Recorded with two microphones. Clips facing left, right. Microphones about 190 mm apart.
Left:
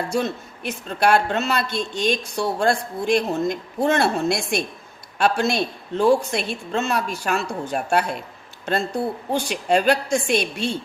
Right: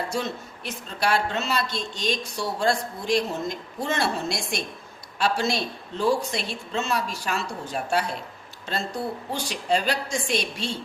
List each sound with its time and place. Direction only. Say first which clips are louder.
0.1 s speech: left 5 dB; 55° left (ahead or behind)
9.3 s speech: left 5 dB; 55° left (ahead or behind)